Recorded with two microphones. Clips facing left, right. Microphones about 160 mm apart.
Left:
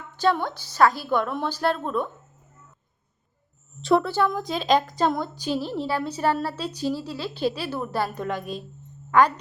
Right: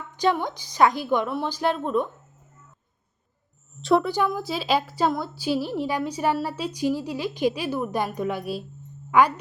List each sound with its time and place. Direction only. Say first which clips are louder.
0.2 s a woman's voice: even; 15° right (ahead or behind)
3.8 s a woman's voice: even; centre (ahead or behind)
4.0 s a woman's voice: left 1 dB; 15° right (ahead or behind)